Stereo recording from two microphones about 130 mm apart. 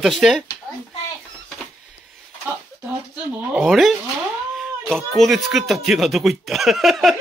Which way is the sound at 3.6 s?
Centre (ahead or behind).